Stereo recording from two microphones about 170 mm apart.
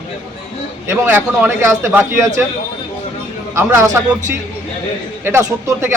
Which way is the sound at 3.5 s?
15° right (ahead or behind).